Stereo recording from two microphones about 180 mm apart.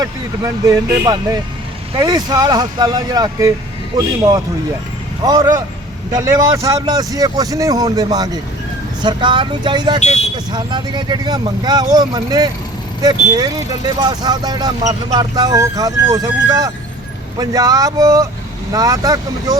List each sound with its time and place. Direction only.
0.0 s speech: 20° right (ahead or behind)